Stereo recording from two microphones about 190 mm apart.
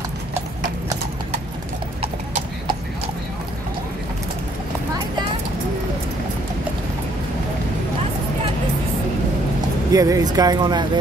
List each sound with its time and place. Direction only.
9.9 s speech: 20° right (ahead or behind)